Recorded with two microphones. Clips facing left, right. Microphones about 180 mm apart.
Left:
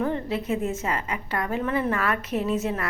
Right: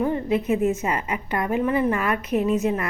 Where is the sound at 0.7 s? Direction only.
20° right (ahead or behind).